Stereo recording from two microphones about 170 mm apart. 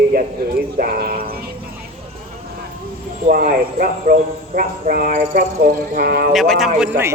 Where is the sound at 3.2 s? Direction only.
55° right (ahead or behind).